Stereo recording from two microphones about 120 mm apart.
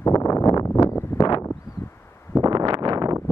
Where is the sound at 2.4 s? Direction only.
40° right (ahead or behind).